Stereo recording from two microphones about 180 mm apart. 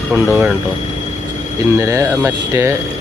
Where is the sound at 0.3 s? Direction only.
10° right (ahead or behind).